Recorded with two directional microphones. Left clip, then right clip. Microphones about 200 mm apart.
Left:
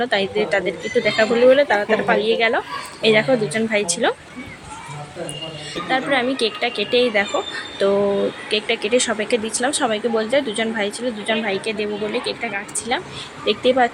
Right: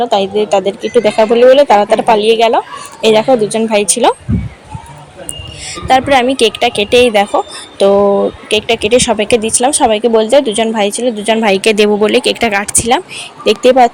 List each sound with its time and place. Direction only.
0.0 s speech: 10° right (ahead or behind)
5.9 s speech: 35° right (ahead or behind)
13.4 s speech: 30° right (ahead or behind)